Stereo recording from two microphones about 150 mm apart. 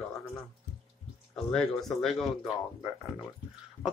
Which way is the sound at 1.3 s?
5° left (ahead or behind).